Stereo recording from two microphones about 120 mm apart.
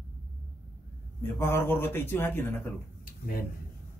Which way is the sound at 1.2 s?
20° left (ahead or behind).